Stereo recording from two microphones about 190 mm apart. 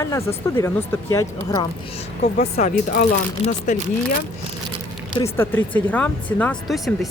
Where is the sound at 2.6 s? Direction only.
40° left (ahead or behind).